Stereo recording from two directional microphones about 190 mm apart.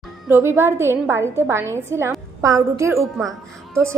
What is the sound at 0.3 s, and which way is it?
A woman's voice, 10° right (ahead or behind).